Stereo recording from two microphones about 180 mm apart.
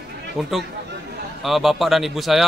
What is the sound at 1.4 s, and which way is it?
A man's voice, centre (ahead or behind).